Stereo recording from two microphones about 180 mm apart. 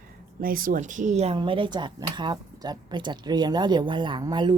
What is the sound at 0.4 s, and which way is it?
Speech, 50° right (ahead or behind).